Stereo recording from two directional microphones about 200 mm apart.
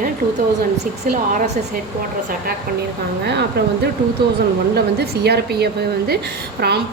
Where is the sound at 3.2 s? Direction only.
60° right (ahead or behind).